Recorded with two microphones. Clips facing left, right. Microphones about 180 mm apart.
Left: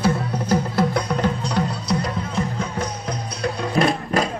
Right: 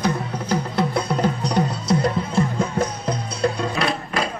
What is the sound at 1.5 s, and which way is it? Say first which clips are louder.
Music: right 2 dB; 25° right (ahead or behind).